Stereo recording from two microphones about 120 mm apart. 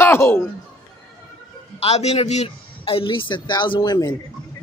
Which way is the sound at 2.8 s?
45° left (ahead or behind).